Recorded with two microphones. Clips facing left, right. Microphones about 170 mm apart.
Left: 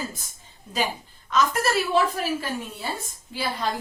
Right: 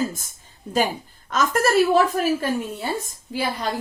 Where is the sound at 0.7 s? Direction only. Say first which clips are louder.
Right 6 dB; 55° right (ahead or behind).